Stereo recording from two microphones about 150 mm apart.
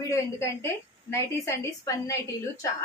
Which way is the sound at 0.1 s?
20° left (ahead or behind).